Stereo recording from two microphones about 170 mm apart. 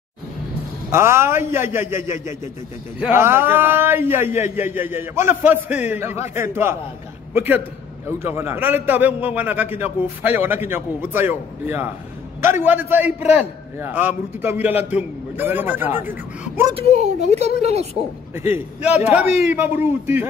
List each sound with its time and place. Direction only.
0.9 s a man's voice: 15° right (ahead or behind)
16.7 s a woman's voice: 40° right (ahead or behind)
18.5 s a man's voice: 10° right (ahead or behind)